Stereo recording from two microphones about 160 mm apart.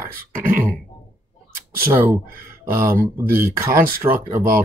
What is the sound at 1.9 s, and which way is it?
Speech, 15° right (ahead or behind).